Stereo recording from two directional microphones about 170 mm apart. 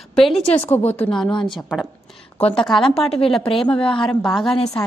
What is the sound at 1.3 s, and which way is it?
Speech, 25° left (ahead or behind).